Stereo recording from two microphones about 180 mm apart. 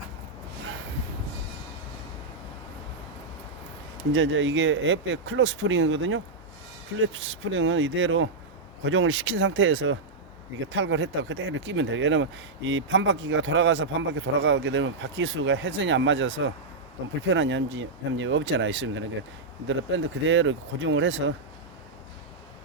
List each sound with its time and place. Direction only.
4.1 s speech: 90° right